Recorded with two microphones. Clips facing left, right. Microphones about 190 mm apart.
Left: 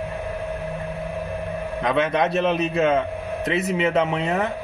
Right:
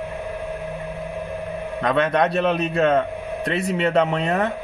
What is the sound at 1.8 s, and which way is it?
Speech, 5° left (ahead or behind).